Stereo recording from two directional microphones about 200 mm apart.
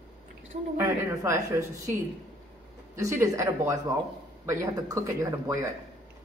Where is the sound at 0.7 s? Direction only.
15° right (ahead or behind).